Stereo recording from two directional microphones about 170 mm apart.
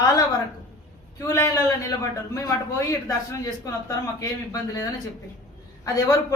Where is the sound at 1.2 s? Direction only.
20° left (ahead or behind).